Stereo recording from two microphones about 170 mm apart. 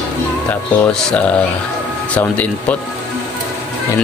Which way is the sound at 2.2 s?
10° left (ahead or behind).